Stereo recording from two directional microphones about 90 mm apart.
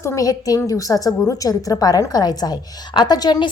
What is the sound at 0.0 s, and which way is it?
A woman's voice, 35° left (ahead or behind).